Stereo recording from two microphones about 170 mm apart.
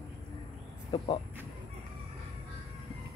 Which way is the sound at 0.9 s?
30° left (ahead or behind).